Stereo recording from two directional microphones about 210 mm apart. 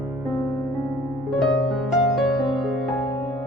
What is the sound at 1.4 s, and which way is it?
Music, centre (ahead or behind).